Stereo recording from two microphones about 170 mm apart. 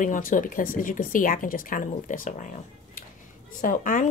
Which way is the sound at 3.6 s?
50° left (ahead or behind).